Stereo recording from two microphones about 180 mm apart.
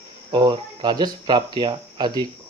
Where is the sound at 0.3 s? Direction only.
25° right (ahead or behind).